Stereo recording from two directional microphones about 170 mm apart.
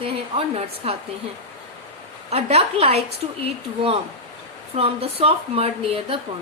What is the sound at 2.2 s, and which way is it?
Speech, 40° right (ahead or behind).